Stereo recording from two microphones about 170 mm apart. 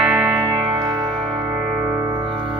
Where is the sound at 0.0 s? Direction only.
5° right (ahead or behind).